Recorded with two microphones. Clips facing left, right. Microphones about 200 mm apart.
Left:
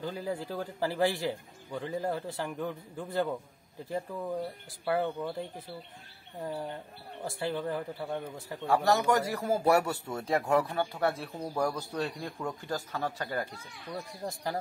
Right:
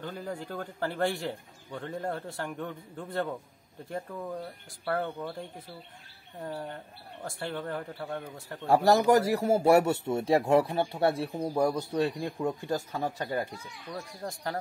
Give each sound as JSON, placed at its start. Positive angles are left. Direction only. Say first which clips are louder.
{"t": 0.0, "sound": "a man's voice", "louder": "left 2 dB", "side_deg": 5}
{"t": 6.4, "sound": "a man's voice", "louder": "left 1 dB", "side_deg": 5}
{"t": 8.8, "sound": "a man's voice", "louder": "right 6 dB", "side_deg": -35}
{"t": 14.2, "sound": "a man's voice", "louder": "even", "side_deg": 5}